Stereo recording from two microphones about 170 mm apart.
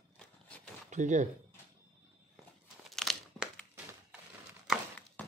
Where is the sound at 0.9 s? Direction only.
45° right (ahead or behind).